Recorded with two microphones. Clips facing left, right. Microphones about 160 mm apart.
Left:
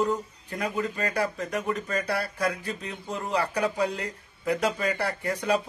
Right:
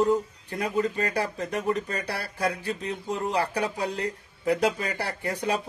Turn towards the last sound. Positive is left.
turn(degrees=-30)  # may be behind; listen again after turning